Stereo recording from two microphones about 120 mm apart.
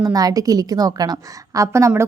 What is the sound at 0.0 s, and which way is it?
A woman's voice, 30° right (ahead or behind).